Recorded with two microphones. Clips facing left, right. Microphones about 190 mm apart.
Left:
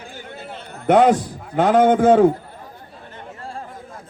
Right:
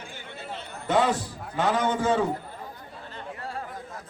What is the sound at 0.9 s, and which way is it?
A man's voice, 55° left (ahead or behind).